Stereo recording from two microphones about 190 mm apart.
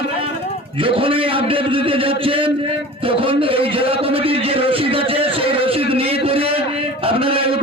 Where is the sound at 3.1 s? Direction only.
30° right (ahead or behind).